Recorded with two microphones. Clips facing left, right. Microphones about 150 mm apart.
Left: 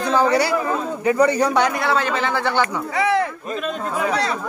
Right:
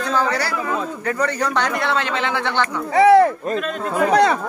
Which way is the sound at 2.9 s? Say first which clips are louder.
Right 8 dB; 40° right (ahead or behind).